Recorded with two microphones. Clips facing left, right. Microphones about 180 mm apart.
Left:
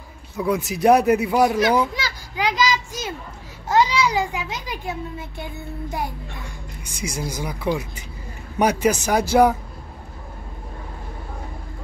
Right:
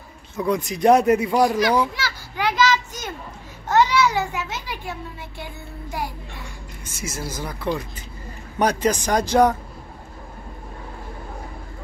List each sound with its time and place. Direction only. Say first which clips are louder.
0.4 s speech: even; 5° left (ahead or behind)
1.7 s children playing: left 1 dB; 15° left (ahead or behind)
3.6 s a child's voice: right 1 dB; 10° left (ahead or behind)